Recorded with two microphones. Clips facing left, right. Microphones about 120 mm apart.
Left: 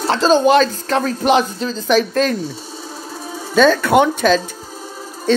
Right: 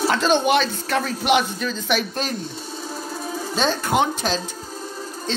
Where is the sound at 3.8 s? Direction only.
65° left (ahead or behind).